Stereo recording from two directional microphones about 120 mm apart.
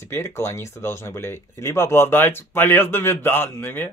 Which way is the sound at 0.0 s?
20° left (ahead or behind).